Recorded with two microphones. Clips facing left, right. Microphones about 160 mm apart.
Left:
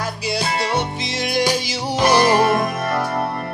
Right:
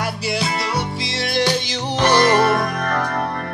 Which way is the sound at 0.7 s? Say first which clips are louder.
Left 1 dB; 20° left (ahead or behind).